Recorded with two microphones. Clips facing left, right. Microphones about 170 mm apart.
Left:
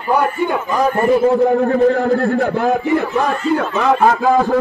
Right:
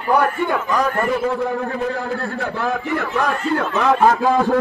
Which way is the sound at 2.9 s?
20° left (ahead or behind).